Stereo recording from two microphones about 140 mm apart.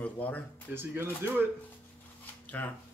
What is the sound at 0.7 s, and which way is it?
Speech, 15° right (ahead or behind).